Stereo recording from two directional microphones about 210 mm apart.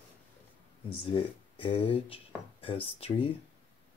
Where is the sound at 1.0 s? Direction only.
25° left (ahead or behind).